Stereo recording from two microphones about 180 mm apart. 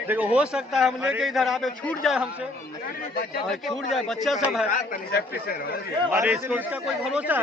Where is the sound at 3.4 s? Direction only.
Centre (ahead or behind).